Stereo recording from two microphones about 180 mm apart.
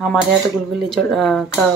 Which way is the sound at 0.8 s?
Centre (ahead or behind).